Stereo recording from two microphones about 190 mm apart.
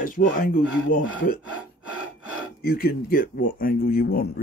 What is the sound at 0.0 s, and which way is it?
Speech, 45° left (ahead or behind).